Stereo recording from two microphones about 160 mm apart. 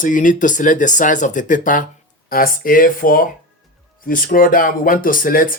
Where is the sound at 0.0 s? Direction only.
55° left (ahead or behind).